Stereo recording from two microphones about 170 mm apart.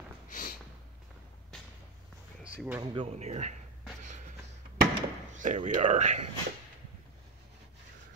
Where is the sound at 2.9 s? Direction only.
40° right (ahead or behind).